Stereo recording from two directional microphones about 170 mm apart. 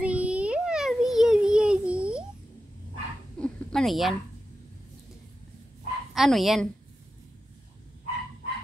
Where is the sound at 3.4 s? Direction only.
Centre (ahead or behind).